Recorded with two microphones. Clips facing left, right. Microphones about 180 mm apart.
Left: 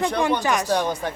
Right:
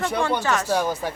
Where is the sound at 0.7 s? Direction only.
5° right (ahead or behind).